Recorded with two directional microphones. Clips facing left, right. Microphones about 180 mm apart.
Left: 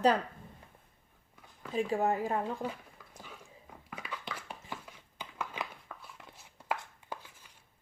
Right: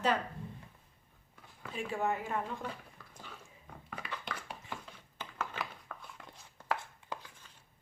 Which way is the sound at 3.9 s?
5° left (ahead or behind).